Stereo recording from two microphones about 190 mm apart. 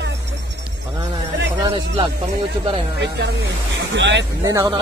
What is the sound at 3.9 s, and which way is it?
Speech, 75° right (ahead or behind).